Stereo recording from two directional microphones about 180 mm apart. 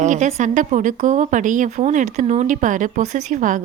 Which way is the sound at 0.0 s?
40° right (ahead or behind).